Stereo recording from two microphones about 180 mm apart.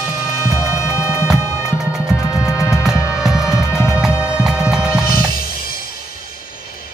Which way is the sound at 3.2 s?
5° right (ahead or behind).